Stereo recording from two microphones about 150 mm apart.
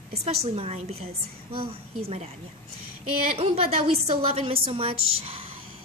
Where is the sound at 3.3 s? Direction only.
40° right (ahead or behind).